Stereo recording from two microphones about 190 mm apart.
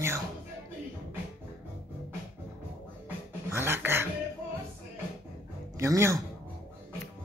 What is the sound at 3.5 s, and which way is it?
Dog, 10° right (ahead or behind).